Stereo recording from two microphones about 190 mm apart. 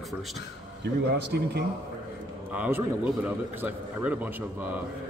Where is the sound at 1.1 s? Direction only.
60° right (ahead or behind).